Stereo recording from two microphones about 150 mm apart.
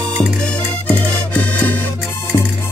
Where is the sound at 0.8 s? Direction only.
10° left (ahead or behind).